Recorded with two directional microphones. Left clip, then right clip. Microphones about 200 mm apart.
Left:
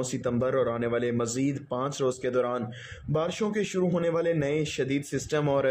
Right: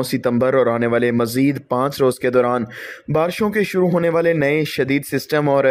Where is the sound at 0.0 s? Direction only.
40° right (ahead or behind).